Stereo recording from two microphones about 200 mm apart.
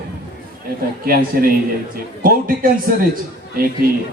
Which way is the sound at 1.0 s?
45° right (ahead or behind).